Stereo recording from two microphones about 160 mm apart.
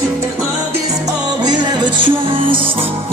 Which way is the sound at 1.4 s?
25° right (ahead or behind).